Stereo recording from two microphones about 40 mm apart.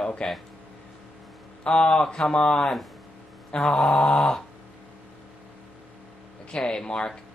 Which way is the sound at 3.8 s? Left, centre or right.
Left.